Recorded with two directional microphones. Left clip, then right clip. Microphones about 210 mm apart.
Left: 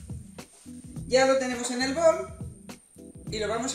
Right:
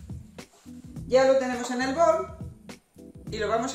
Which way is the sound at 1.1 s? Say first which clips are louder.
Right 2 dB; 10° right (ahead or behind).